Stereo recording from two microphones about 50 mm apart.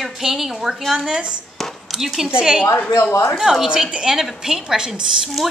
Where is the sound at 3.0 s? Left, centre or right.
Left.